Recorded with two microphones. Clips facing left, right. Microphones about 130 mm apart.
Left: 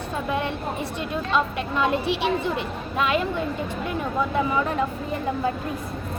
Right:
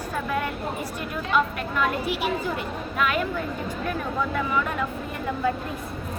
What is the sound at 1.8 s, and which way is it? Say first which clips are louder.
A woman's voice: left 2 dB; 25° left (ahead or behind).